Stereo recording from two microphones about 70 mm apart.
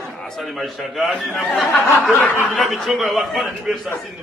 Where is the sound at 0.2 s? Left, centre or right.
Centre.